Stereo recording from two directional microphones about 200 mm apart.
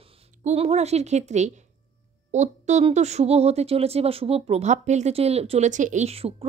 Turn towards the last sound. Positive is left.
turn(degrees=-30)  # may be behind; listen again after turning